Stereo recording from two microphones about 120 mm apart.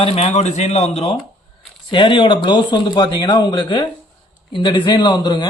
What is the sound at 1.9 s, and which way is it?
Speech, 40° left (ahead or behind).